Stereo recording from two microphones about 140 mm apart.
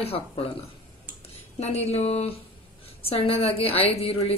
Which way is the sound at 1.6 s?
50° left (ahead or behind).